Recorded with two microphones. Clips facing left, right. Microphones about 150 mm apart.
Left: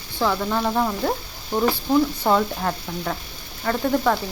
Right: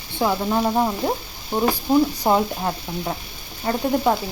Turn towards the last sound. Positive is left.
turn(degrees=-20)  # may be behind; listen again after turning